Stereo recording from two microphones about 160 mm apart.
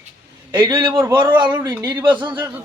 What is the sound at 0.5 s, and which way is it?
Speech, 20° right (ahead or behind).